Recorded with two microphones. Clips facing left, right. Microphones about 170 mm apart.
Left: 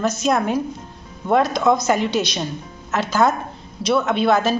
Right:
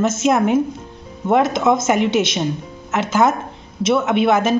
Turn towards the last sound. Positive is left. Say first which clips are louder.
# right 2 dB
turn(degrees=-20)  # may be behind; listen again after turning